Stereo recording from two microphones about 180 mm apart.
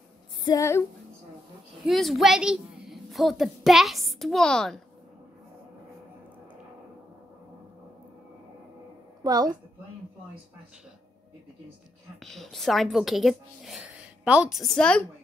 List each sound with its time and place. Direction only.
0.5 s a sound: 15° left (ahead or behind)
1.9 s a woman's voice: centre (ahead or behind)
9.2 s a woman's voice: 20° right (ahead or behind)
12.2 s a woman's voice: centre (ahead or behind)